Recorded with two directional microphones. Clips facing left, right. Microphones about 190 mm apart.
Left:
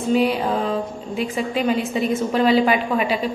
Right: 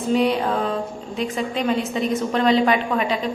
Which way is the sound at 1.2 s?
5° left (ahead or behind).